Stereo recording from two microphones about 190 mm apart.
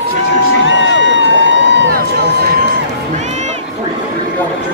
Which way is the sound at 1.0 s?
75° right (ahead or behind).